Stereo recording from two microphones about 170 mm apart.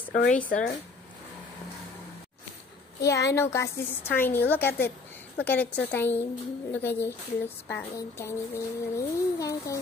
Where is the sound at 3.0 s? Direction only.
15° left (ahead or behind).